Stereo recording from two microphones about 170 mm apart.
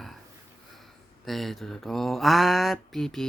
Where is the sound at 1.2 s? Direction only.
Centre (ahead or behind).